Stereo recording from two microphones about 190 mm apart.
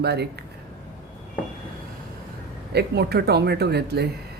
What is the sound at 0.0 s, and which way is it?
Speech, 60° right (ahead or behind).